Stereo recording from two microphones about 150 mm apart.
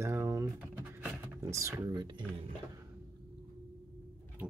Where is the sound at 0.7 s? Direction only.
10° right (ahead or behind).